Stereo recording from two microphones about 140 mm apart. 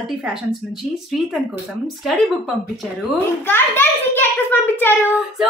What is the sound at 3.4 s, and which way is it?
A child's voice, 15° left (ahead or behind).